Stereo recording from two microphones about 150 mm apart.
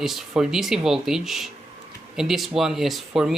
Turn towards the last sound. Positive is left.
turn(degrees=0)  # may be behind; listen again after turning